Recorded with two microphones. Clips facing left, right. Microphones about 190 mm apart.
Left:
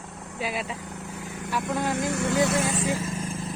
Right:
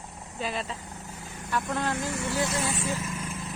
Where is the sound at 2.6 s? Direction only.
40° left (ahead or behind).